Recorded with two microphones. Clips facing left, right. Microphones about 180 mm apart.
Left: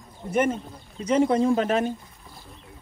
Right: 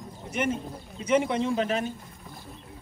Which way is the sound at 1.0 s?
40° left (ahead or behind).